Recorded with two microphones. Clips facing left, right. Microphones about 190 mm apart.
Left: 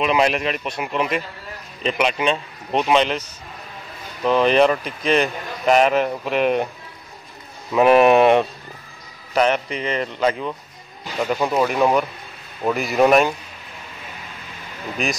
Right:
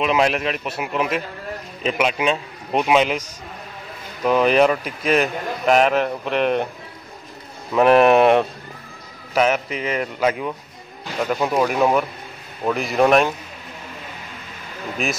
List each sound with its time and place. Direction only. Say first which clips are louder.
0.0 s a man's voice: even; centre (ahead or behind)
7.7 s a man's voice: even; 5° left (ahead or behind)
15.0 s a man's voice: even; centre (ahead or behind)